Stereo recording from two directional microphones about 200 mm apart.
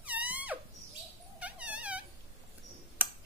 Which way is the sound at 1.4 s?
5° right (ahead or behind).